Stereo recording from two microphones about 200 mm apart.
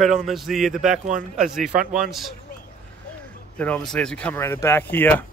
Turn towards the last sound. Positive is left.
turn(degrees=10)  # may be behind; listen again after turning